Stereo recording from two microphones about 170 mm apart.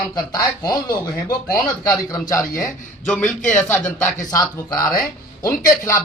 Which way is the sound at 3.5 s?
10° left (ahead or behind).